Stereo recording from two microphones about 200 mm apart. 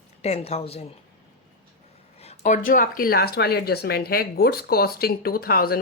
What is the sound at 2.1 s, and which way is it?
Speech, 30° left (ahead or behind).